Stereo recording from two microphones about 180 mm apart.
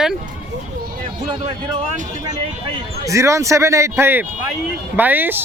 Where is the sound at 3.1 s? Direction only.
15° right (ahead or behind).